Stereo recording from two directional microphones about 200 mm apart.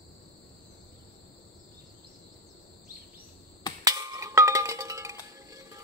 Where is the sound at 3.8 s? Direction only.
15° right (ahead or behind).